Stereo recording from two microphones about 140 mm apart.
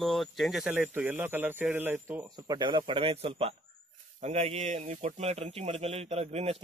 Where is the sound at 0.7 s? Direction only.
10° right (ahead or behind).